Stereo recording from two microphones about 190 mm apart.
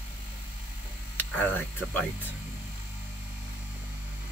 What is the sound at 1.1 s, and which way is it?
Speech, 10° left (ahead or behind).